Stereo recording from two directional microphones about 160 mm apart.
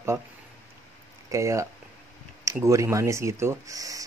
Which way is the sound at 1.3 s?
20° right (ahead or behind).